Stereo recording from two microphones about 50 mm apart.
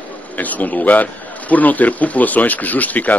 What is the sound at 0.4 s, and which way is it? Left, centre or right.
Speech, left.